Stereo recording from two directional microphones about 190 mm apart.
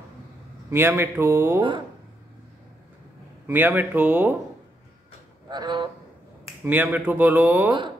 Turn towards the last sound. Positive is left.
turn(degrees=-10)  # may be behind; listen again after turning